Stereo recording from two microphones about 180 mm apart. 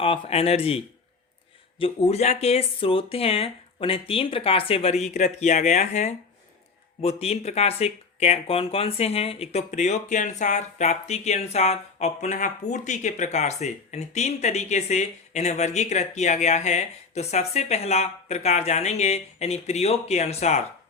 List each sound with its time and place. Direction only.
0.0 s speech: 30° left (ahead or behind)
1.8 s speech: 35° left (ahead or behind)